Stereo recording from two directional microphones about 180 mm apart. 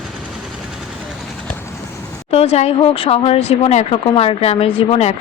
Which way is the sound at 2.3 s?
35° left (ahead or behind).